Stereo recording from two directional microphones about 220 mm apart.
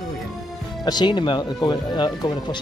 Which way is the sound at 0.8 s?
20° left (ahead or behind).